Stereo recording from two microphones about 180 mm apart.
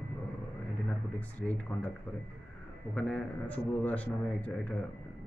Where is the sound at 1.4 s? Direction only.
Centre (ahead or behind).